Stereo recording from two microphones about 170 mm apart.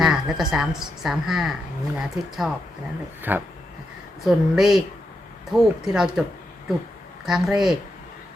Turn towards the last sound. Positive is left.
turn(degrees=-5)  # may be behind; listen again after turning